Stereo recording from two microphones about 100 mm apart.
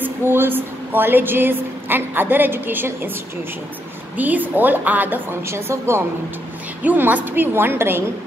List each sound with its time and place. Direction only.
0.0 s a woman's voice: 20° right (ahead or behind)
4.2 s a woman's voice: 15° right (ahead or behind)
6.8 s a woman's voice: 15° right (ahead or behind)